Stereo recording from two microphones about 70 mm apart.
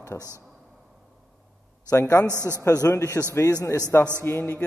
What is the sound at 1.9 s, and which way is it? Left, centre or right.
Speech, left.